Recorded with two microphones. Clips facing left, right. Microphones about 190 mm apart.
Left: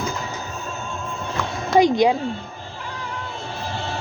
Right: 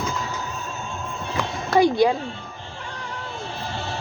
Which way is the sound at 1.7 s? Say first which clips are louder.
Left 1 dB; 20° left (ahead or behind).